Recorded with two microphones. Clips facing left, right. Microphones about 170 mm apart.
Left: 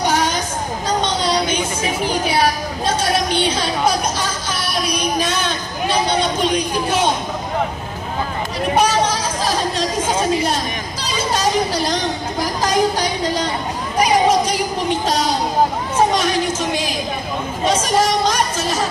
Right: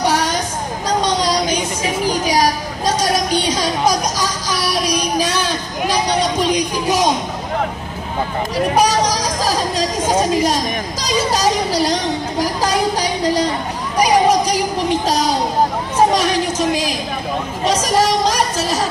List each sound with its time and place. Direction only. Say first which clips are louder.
1.0 s a sound: right 2 dB; 35° right (ahead or behind)
3.0 s music: even; 40° right (ahead or behind)
6.0 s a sound: right 1 dB; 35° right (ahead or behind)
8.7 s a woman's voice: even; 40° right (ahead or behind)
13.9 s children playing: right 1 dB; 35° right (ahead or behind)
15.0 s a child's voice: right 2 dB; 35° right (ahead or behind)
17.6 s music: right 1 dB; 35° right (ahead or behind)